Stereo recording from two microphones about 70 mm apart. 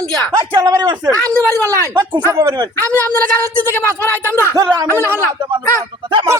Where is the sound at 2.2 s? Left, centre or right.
Right.